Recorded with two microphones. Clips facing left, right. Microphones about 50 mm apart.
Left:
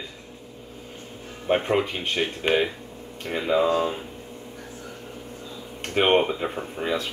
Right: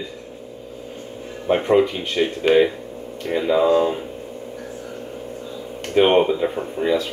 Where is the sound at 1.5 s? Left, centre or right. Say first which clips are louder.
Right 6 dB; centre.